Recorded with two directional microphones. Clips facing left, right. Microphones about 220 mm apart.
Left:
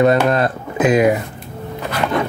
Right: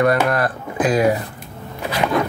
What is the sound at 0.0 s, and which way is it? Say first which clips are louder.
Speech: left 3 dB; 25° left (ahead or behind).